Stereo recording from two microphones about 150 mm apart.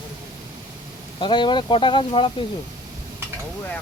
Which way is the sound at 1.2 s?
30° left (ahead or behind).